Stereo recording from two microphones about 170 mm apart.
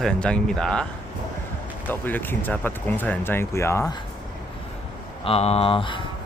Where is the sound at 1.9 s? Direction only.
10° left (ahead or behind).